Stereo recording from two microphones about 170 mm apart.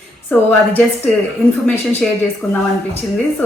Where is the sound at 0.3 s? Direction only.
10° left (ahead or behind).